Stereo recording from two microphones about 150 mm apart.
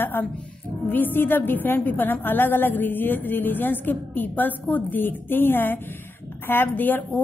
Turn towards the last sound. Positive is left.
turn(degrees=10)  # may be behind; listen again after turning